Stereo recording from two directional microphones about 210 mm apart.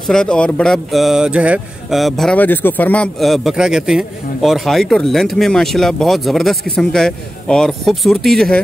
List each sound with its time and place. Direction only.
0.1 s speech: 5° left (ahead or behind)